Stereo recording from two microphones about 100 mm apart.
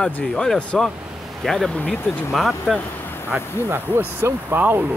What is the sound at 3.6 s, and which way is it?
Speech, 25° right (ahead or behind).